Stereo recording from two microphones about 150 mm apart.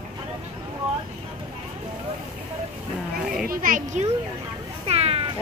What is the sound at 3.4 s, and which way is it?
Children playing, 70° right (ahead or behind).